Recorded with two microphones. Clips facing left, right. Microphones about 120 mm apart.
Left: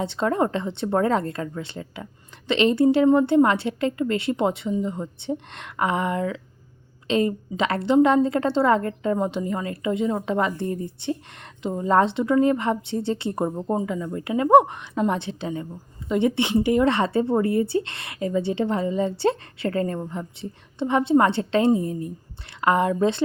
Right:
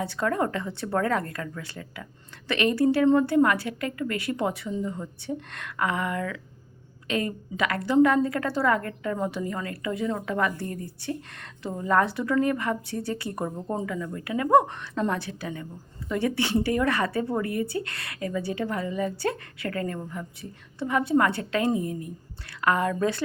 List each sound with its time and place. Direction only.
0.0 s a woman's voice: 25° left (ahead or behind)